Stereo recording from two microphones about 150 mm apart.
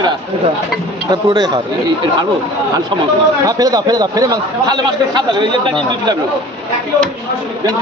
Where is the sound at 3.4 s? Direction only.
25° right (ahead or behind).